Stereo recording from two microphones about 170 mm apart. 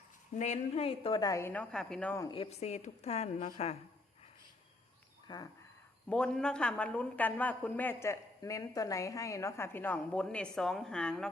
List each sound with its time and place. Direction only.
0.3 s a woman's voice: 40° left (ahead or behind); by 1.6 s 15° left (ahead or behind)
1.7 s speech: 5° left (ahead or behind)
2.2 s a woman's voice: 30° left (ahead or behind)
5.3 s speech: 25° left (ahead or behind)
6.1 s a man's voice: 5° left (ahead or behind)